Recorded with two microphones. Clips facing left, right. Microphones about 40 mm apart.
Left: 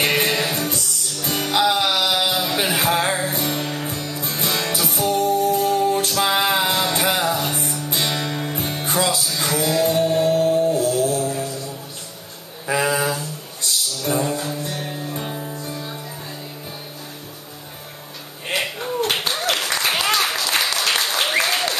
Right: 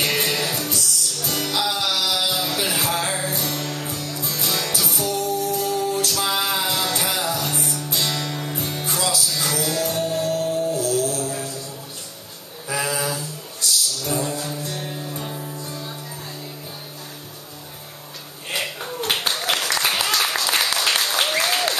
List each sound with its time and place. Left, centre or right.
0.0 s music: left
12.6 s a sound: left
13.6 s music: left
14.0 s music: centre
18.5 s a sound: centre
19.5 s applause: centre